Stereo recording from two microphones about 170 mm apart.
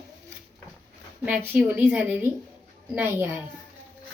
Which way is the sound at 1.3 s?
10° right (ahead or behind).